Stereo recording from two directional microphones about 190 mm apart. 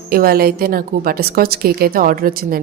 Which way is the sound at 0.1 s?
50° right (ahead or behind).